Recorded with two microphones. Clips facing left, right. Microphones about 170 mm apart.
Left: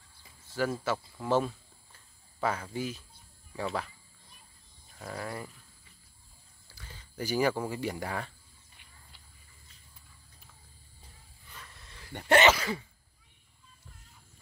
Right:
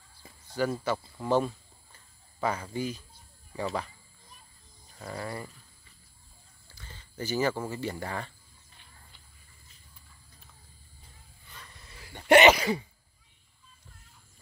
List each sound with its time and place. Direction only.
0.5 s speech: centre (ahead or behind)
6.7 s speech: 10° left (ahead or behind)
11.6 s a sound: centre (ahead or behind)
12.3 s sneeze: 15° right (ahead or behind)